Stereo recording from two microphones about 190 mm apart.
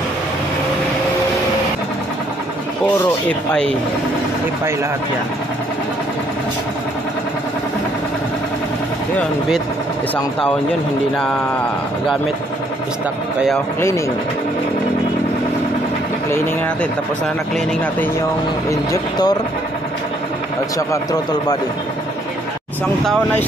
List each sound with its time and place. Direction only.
3.3 s speech: 5° left (ahead or behind)
13.7 s speech: 15° left (ahead or behind)
18.7 s speech: 20° left (ahead or behind)
20.7 s speech: 20° left (ahead or behind)